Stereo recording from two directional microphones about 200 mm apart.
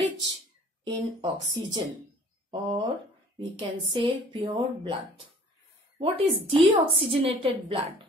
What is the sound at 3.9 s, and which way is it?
Speech, 25° right (ahead or behind).